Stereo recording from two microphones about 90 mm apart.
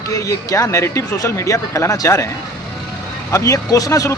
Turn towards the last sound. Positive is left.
turn(degrees=35)  # may be behind; listen again after turning